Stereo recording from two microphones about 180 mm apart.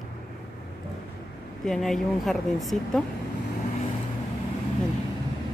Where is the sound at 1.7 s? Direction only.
Centre (ahead or behind).